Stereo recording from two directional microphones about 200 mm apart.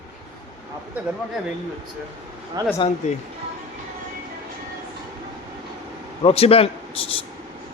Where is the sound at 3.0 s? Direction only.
35° left (ahead or behind).